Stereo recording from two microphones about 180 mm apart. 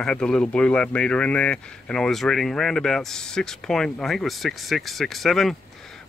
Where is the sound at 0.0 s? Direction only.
5° left (ahead or behind).